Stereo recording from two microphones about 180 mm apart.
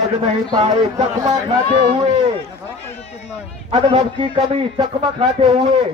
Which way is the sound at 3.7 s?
30° right (ahead or behind).